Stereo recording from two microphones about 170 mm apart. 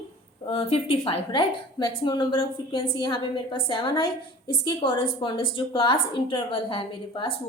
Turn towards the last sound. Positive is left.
turn(degrees=30)  # may be behind; listen again after turning